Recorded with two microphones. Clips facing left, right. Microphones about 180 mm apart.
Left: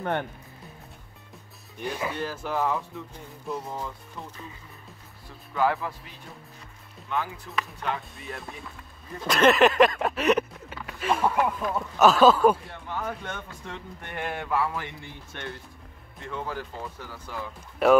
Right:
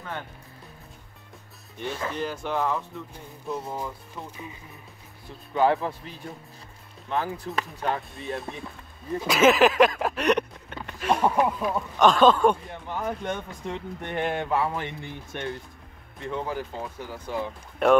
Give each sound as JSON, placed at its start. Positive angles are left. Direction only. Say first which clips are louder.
{"t": 1.8, "sound": "speech", "louder": "even", "side_deg": 10}
{"t": 5.5, "sound": "speech", "louder": "right 3 dB", "side_deg": -25}
{"t": 7.1, "sound": "speech", "louder": "right 3 dB", "side_deg": -35}
{"t": 9.2, "sound": "a sound", "louder": "right 1 dB", "side_deg": -5}
{"t": 11.4, "sound": "speech", "louder": "right 2 dB", "side_deg": -10}
{"t": 12.0, "sound": "speech", "louder": "left 1 dB", "side_deg": 5}
{"t": 12.8, "sound": "speech", "louder": "right 4 dB", "side_deg": -15}
{"t": 17.8, "sound": "speech", "louder": "even", "side_deg": 5}